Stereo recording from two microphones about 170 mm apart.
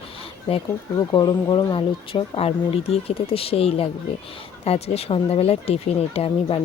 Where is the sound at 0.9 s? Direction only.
25° left (ahead or behind).